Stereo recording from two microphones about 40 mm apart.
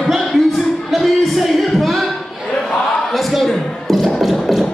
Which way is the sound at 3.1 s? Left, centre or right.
Centre.